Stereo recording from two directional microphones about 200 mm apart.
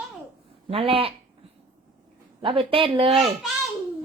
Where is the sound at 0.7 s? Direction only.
30° right (ahead or behind).